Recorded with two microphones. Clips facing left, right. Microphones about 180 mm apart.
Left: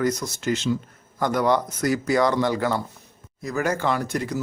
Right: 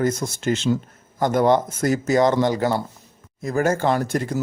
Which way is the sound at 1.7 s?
50° right (ahead or behind).